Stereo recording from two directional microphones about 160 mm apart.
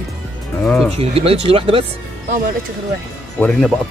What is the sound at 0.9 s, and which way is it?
Speech, 35° right (ahead or behind).